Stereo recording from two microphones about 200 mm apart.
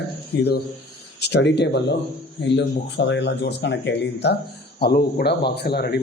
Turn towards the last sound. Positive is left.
turn(degrees=50)  # may be behind; listen again after turning